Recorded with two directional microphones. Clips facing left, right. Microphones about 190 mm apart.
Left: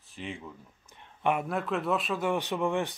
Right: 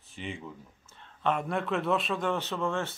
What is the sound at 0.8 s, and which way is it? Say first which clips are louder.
A man's voice: left 1 dB; 15° left (ahead or behind).